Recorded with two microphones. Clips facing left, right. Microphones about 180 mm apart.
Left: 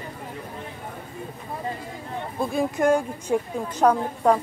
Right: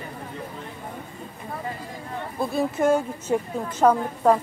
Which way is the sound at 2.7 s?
5° right (ahead or behind).